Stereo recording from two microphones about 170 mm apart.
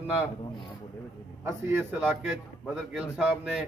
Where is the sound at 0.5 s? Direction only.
30° left (ahead or behind).